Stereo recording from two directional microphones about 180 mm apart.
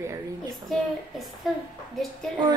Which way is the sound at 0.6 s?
Centre (ahead or behind).